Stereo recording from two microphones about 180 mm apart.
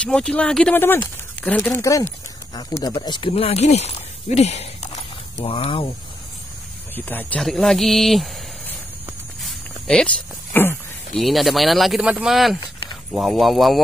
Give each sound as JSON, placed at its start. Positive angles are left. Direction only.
{"t": 0.0, "sound": "speech", "side_deg": 5}
{"t": 7.1, "sound": "speech", "side_deg": 10}
{"t": 9.4, "sound": "cricket", "side_deg": 5}
{"t": 11.1, "sound": "speech", "side_deg": 0}